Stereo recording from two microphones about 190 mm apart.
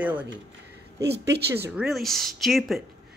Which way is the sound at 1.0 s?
60° right (ahead or behind).